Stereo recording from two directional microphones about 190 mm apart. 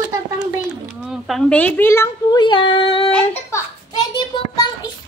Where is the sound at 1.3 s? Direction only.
5° left (ahead or behind); by 3.1 s 30° left (ahead or behind).